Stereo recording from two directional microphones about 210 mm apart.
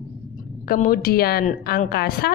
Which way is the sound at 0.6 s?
45° left (ahead or behind).